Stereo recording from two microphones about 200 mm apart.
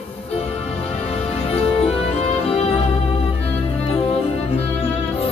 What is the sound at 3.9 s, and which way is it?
Music, 30° left (ahead or behind).